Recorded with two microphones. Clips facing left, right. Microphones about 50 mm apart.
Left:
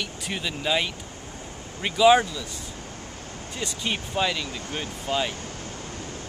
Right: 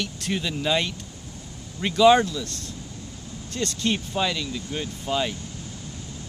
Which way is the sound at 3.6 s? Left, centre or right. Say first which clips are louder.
Right 4 dB; centre.